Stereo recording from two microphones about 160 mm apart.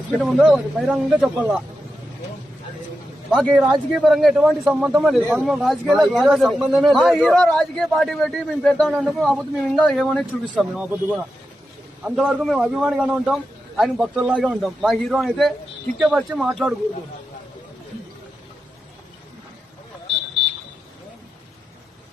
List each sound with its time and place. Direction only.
0.2 s a man's voice: centre (ahead or behind)
3.2 s a man's voice: 5° left (ahead or behind)